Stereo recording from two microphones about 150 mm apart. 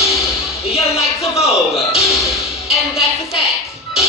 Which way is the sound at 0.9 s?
40° left (ahead or behind).